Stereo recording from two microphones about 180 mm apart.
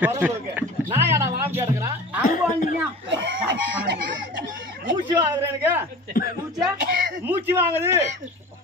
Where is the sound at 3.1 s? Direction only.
85° right.